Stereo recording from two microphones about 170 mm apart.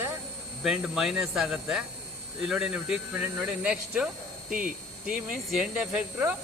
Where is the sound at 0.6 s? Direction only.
5° right (ahead or behind).